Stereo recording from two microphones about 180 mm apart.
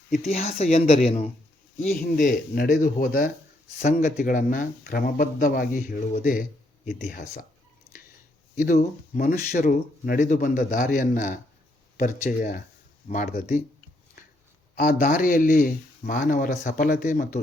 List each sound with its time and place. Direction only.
0.3 s speech: 35° left (ahead or behind)
1.9 s speech: 50° left (ahead or behind)
3.8 s speech: 45° left (ahead or behind)
8.5 s speech: 50° left (ahead or behind)
14.8 s speech: 50° left (ahead or behind)